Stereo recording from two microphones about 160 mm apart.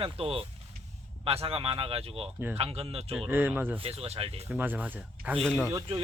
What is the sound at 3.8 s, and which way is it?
Speech, 40° right (ahead or behind).